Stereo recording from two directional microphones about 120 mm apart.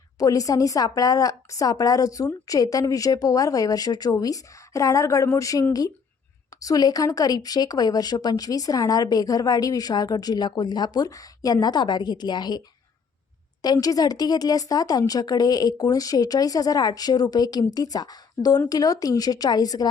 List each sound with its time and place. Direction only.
0.2 s a woman's voice: 30° left (ahead or behind)